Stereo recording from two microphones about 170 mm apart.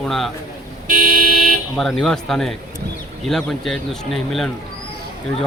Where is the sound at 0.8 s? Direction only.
55° right (ahead or behind).